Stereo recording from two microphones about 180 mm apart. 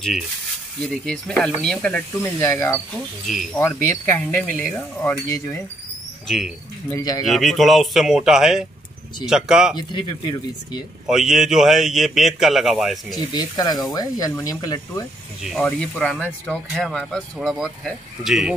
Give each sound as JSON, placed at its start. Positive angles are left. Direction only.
{"t": 0.8, "sound": "speech", "side_deg": 5}
{"t": 6.2, "sound": "speech", "side_deg": 0}
{"t": 6.9, "sound": "speech", "side_deg": 20}
{"t": 7.2, "sound": "speech", "side_deg": 0}
{"t": 9.8, "sound": "speech", "side_deg": 25}
{"t": 11.1, "sound": "speech", "side_deg": -5}
{"t": 13.1, "sound": "speech", "side_deg": 20}
{"t": 15.4, "sound": "speech", "side_deg": 0}